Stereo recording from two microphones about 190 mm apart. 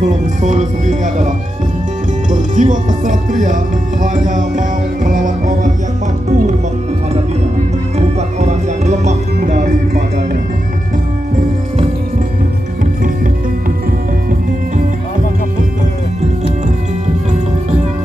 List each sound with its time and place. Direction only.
0.4 s speech: 40° right (ahead or behind)
2.3 s speech: 40° right (ahead or behind)
8.4 s music: 35° right (ahead or behind)